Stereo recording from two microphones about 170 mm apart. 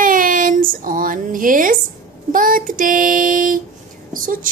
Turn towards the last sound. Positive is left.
turn(degrees=-50)  # may be behind; listen again after turning